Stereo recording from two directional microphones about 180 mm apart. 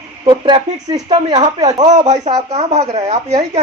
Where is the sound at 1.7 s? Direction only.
40° right (ahead or behind).